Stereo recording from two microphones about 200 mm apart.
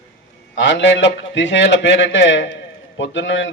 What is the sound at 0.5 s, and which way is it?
A man's voice, 65° left (ahead or behind).